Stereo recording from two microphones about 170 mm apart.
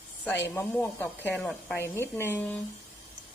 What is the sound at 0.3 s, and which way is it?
A woman's voice, 15° left (ahead or behind).